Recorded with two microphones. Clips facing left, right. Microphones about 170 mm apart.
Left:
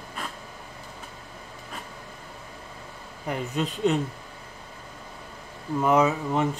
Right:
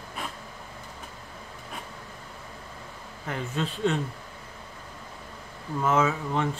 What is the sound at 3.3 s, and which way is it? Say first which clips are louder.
Speech: left 3 dB; 15° left (ahead or behind).